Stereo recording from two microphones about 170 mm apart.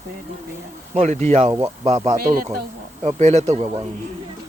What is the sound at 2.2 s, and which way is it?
Speech, 60° right (ahead or behind).